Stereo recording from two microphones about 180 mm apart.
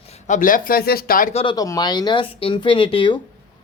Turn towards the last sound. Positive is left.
turn(degrees=25)  # may be behind; listen again after turning